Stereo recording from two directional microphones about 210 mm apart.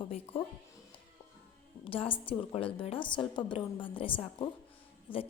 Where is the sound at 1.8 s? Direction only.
25° left (ahead or behind).